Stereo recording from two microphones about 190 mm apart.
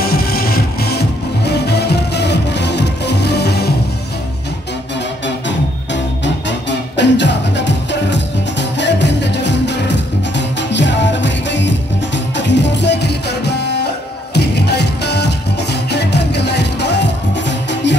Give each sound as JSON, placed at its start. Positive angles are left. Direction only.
{"t": 0.0, "sound": "music", "side_deg": 55}
{"t": 7.0, "sound": "music", "side_deg": 65}